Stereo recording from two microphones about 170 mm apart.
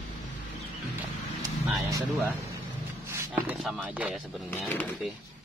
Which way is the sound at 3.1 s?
10° right (ahead or behind).